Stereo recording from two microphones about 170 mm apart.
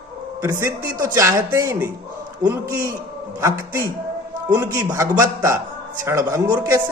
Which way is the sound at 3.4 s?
15° right (ahead or behind).